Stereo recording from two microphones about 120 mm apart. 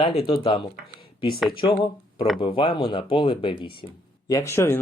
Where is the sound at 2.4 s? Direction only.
45° left (ahead or behind).